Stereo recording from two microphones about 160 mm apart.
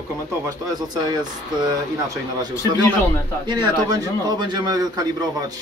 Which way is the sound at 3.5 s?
25° right (ahead or behind).